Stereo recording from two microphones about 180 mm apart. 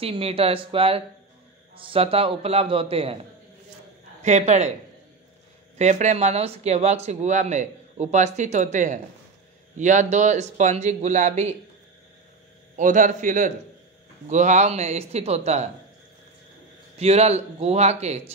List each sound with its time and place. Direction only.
0.0 s speech: 30° right (ahead or behind)
5.8 s speech: 40° right (ahead or behind)
12.7 s a man's voice: 45° right (ahead or behind)
16.9 s speech: 35° right (ahead or behind)